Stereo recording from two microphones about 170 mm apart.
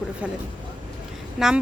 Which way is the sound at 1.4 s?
5° right (ahead or behind).